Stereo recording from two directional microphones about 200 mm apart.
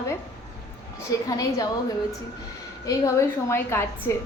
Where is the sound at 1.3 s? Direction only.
15° left (ahead or behind).